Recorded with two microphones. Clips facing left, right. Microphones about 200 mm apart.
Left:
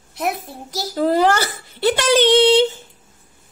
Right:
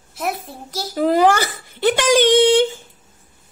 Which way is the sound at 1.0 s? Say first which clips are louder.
Right 1 dB; 15° right (ahead or behind).